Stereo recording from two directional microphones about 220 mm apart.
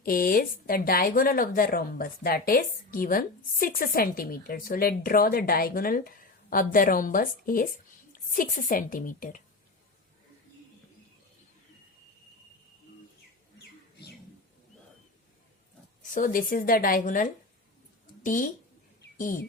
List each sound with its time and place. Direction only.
0.0 s speech: 40° left (ahead or behind)
16.0 s a woman's voice: 40° left (ahead or behind)